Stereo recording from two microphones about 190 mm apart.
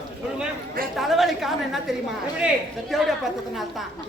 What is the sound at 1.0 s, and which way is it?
Speech, centre (ahead or behind).